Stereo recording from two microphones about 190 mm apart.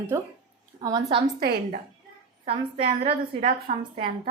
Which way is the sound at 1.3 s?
55° right (ahead or behind).